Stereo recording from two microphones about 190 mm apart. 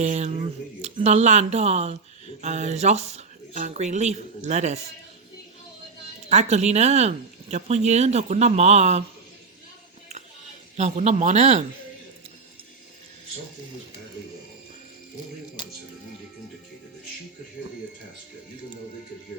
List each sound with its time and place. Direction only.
0.0 s speech: 35° right (ahead or behind)
6.2 s speech: 35° right (ahead or behind)
10.8 s speech: 35° right (ahead or behind)